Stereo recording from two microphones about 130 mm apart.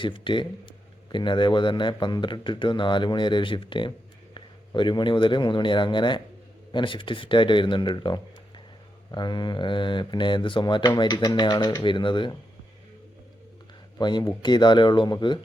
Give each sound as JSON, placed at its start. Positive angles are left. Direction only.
{"t": 0.0, "sound": "speech", "side_deg": 40}
{"t": 14.0, "sound": "speech", "side_deg": 35}